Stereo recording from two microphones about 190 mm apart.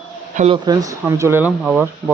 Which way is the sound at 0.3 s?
30° right (ahead or behind).